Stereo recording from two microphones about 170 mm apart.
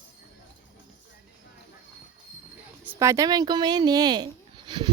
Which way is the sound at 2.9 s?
20° right (ahead or behind).